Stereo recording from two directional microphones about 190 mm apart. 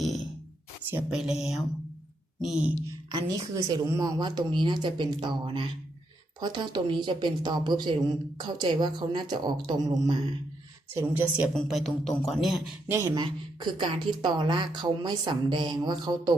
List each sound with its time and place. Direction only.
0.9 s beatboxing: 5° right (ahead or behind)
3.1 s speech: 20° right (ahead or behind)
10.9 s speech: 10° right (ahead or behind)
11.5 s beatboxing: centre (ahead or behind)
12.9 s speech: 15° right (ahead or behind)